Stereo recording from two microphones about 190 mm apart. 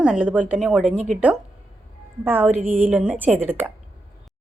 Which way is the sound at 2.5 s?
40° right (ahead or behind).